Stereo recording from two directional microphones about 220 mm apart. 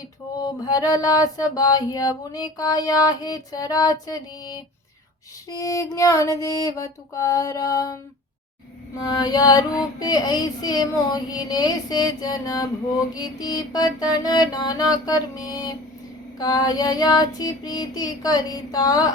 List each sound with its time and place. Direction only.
0.4 s music: 15° left (ahead or behind)
9.0 s music: 20° left (ahead or behind)